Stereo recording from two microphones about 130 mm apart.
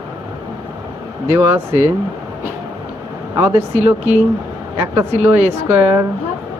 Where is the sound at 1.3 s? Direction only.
20° right (ahead or behind).